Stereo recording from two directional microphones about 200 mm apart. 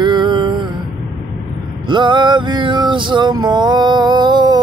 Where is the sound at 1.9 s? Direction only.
25° right (ahead or behind).